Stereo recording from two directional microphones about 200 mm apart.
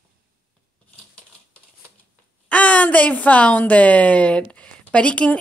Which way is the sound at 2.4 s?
5° left (ahead or behind).